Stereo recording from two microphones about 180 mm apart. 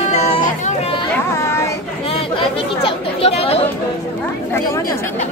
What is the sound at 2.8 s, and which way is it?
Chatter, 35° left (ahead or behind).